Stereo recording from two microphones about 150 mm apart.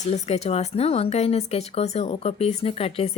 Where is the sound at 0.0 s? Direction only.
45° left (ahead or behind).